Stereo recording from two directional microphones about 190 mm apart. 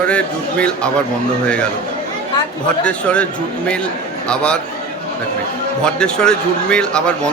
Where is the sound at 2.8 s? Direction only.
5° left (ahead or behind).